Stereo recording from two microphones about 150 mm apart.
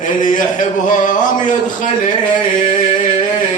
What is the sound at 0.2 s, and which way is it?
Speech, 60° left (ahead or behind).